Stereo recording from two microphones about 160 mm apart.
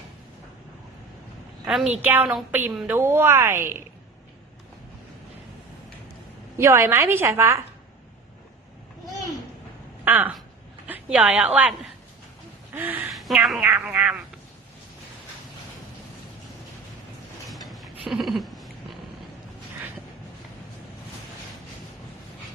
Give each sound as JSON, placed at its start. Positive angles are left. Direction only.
{"t": 1.6, "sound": "a woman's voice", "side_deg": -5}
{"t": 6.6, "sound": "a woman's voice", "side_deg": -15}
{"t": 10.0, "sound": "a woman's voice", "side_deg": -10}
{"t": 12.7, "sound": "a woman's voice", "side_deg": -10}
{"t": 13.1, "sound": "a woman's voice", "side_deg": 0}
{"t": 17.5, "sound": "a sound", "side_deg": 0}